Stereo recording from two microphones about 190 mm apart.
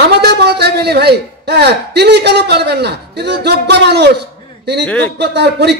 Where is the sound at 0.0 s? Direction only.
60° right (ahead or behind).